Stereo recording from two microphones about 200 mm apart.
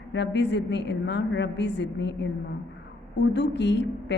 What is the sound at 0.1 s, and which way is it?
A woman's voice, 60° left (ahead or behind).